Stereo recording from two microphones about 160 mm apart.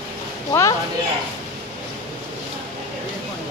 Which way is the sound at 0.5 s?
20° left (ahead or behind).